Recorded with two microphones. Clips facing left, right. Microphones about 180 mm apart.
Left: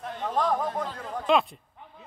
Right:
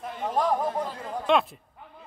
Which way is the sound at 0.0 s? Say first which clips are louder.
Right 1 dB; 10° right (ahead or behind).